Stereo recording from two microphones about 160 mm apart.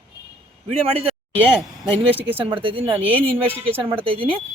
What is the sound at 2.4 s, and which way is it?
Speech, 35° right (ahead or behind).